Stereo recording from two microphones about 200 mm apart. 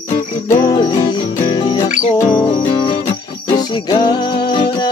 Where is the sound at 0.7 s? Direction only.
20° left (ahead or behind).